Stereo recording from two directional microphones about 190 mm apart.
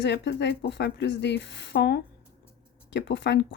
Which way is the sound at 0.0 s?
65° left (ahead or behind).